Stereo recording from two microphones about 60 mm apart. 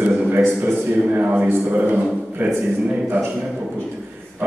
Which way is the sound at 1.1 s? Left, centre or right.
Right.